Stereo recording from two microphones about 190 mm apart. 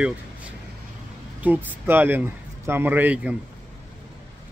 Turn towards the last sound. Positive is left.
turn(degrees=-10)  # may be behind; listen again after turning